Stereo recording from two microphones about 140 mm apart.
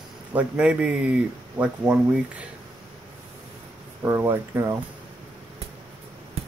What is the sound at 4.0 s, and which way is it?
Speech, 15° right (ahead or behind).